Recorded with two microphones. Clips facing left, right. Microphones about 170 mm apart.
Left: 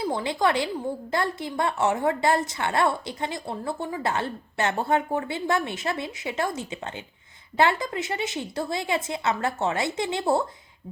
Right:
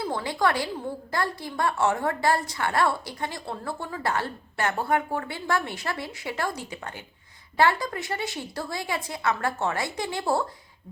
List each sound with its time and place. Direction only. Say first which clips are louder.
0.0 s a woman's voice: left 1 dB; 20° left (ahead or behind)